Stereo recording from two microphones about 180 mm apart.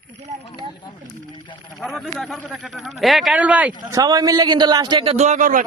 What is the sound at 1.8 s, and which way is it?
A man's voice, centre (ahead or behind).